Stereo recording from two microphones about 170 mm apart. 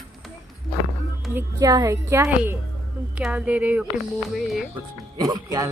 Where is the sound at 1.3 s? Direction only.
10° right (ahead or behind).